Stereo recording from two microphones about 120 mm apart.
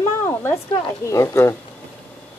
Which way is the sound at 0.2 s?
20° left (ahead or behind).